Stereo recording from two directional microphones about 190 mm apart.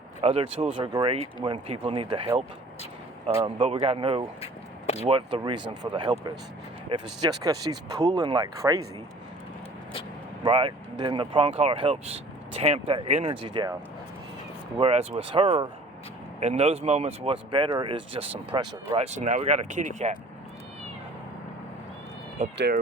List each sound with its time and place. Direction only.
0.2 s speech: 30° right (ahead or behind)
10.4 s speech: 25° right (ahead or behind)
14.8 s speech: 30° right (ahead or behind)
19.0 s speech: 40° right (ahead or behind)
22.5 s speech: 60° right (ahead or behind)